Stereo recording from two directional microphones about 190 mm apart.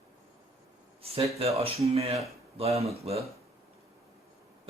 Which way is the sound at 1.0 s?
30° right (ahead or behind).